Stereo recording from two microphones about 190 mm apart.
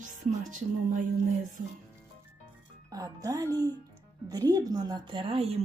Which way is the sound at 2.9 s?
20° right (ahead or behind).